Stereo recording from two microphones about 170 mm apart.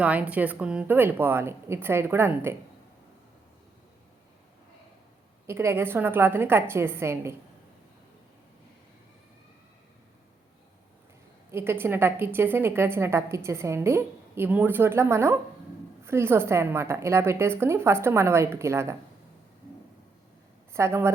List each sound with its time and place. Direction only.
0.0 s a woman's voice: 10° right (ahead or behind)
5.5 s a woman's voice: 15° right (ahead or behind)
11.5 s a woman's voice: 15° right (ahead or behind)
20.7 s a woman's voice: 15° right (ahead or behind)